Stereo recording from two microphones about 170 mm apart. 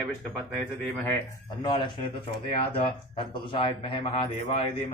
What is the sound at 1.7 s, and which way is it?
Speech, 30° left (ahead or behind).